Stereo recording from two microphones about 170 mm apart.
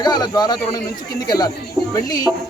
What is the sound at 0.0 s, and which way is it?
Speech, 25° left (ahead or behind).